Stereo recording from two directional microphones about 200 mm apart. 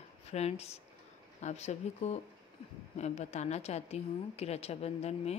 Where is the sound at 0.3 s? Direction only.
30° left (ahead or behind).